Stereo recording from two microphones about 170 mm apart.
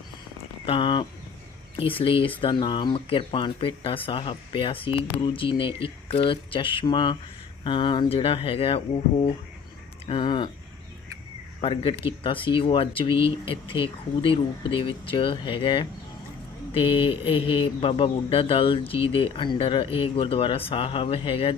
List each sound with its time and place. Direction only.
0.6 s speech: 30° left (ahead or behind)
11.6 s speech: 30° left (ahead or behind)